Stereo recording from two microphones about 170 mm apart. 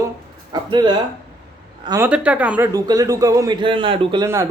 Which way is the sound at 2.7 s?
20° right (ahead or behind).